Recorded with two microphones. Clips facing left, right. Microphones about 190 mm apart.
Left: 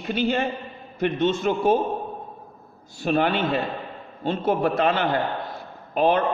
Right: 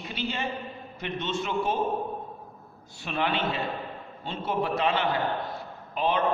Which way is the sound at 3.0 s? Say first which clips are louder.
Left 7 dB; 45° left (ahead or behind).